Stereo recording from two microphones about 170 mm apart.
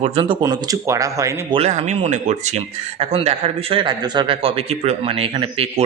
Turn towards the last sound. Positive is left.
turn(degrees=-30)  # may be behind; listen again after turning